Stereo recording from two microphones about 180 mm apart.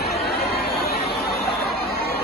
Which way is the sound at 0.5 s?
60° left (ahead or behind).